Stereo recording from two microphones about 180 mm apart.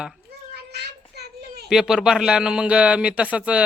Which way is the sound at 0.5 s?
65° right (ahead or behind).